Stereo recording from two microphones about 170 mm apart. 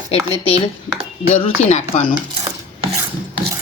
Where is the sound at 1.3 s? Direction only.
40° left (ahead or behind).